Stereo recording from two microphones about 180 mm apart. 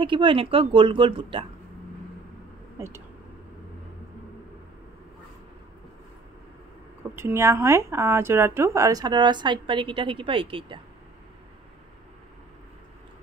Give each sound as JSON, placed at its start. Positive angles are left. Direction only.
{"t": 0.0, "sound": "speech", "side_deg": -25}
{"t": 7.2, "sound": "speech", "side_deg": -15}